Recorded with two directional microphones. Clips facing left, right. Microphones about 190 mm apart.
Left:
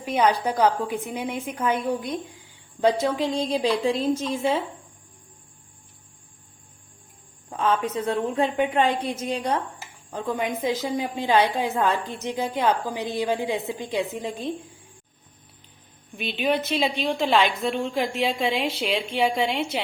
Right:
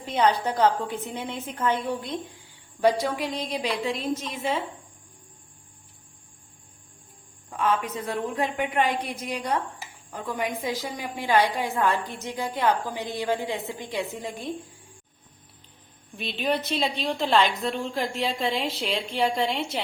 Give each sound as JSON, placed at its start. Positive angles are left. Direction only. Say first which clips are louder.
{"t": 0.0, "sound": "a woman's voice", "louder": "left 1 dB", "side_deg": 15}
{"t": 2.8, "sound": "a woman's voice", "louder": "left 2 dB", "side_deg": 25}
{"t": 7.5, "sound": "a woman's voice", "louder": "left 2 dB", "side_deg": 30}
{"t": 16.1, "sound": "a woman's voice", "louder": "left 3 dB", "side_deg": 0}